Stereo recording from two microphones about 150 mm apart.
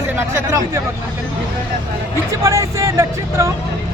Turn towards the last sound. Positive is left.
turn(degrees=-20)  # may be behind; listen again after turning